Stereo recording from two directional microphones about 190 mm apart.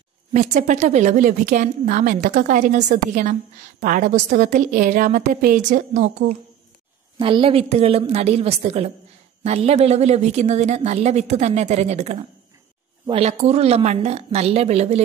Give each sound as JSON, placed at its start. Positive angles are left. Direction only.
{"t": 0.3, "sound": "a woman's voice", "side_deg": -40}
{"t": 7.2, "sound": "speech", "side_deg": -25}